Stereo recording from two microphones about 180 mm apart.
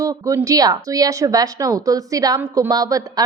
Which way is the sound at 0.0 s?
20° right (ahead or behind).